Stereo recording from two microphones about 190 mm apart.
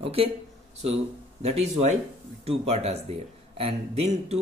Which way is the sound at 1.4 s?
35° right (ahead or behind).